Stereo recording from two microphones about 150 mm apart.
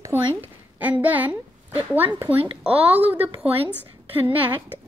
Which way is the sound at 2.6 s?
10° right (ahead or behind).